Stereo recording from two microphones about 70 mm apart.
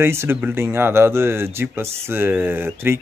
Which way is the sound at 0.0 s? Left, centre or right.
Right.